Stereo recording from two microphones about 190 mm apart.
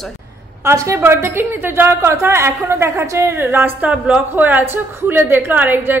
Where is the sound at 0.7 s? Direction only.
15° right (ahead or behind).